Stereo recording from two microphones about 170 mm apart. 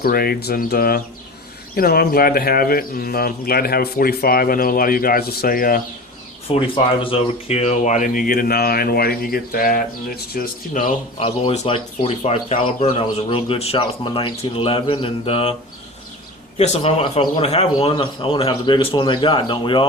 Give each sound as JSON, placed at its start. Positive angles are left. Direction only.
{"t": 0.0, "sound": "speech", "side_deg": 60}
{"t": 6.5, "sound": "speech", "side_deg": 30}
{"t": 11.2, "sound": "speech", "side_deg": 35}
{"t": 16.6, "sound": "speech", "side_deg": 40}